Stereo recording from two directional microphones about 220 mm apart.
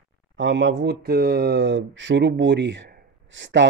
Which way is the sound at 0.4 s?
60° right (ahead or behind).